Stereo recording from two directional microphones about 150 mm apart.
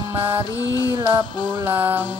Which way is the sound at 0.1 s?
15° right (ahead or behind).